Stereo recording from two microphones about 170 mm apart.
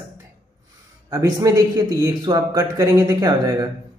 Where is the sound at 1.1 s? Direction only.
20° right (ahead or behind).